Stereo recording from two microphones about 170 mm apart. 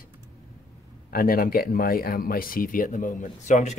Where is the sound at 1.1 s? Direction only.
55° left (ahead or behind).